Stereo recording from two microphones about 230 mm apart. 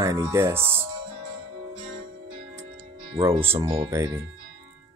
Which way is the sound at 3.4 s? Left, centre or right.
Centre.